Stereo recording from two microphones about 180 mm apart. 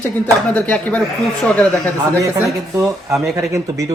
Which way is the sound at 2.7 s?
15° right (ahead or behind).